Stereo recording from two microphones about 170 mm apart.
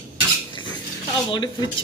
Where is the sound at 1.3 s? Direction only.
25° left (ahead or behind).